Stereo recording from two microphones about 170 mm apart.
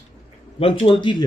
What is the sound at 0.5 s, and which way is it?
Speech, 35° left (ahead or behind).